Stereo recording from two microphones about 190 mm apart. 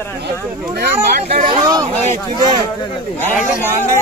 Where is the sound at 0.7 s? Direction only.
55° right (ahead or behind).